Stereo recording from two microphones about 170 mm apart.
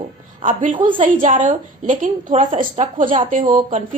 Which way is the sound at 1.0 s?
50° right (ahead or behind).